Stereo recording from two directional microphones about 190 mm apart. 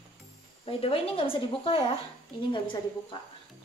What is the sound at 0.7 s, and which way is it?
A woman's voice, 30° left (ahead or behind).